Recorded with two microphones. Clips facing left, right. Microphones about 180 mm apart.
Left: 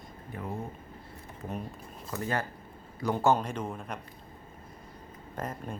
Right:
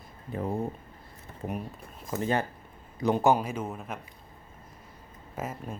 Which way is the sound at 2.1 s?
20° right (ahead or behind).